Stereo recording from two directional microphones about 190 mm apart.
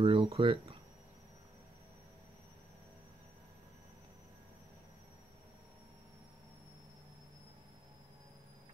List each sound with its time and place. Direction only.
0.0 s speech: 30° right (ahead or behind)